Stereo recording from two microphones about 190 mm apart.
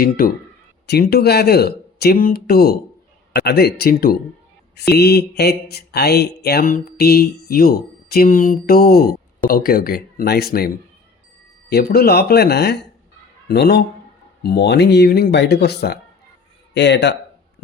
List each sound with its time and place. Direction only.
0.0 s speech: 50° left (ahead or behind)
11.7 s speech: 55° left (ahead or behind)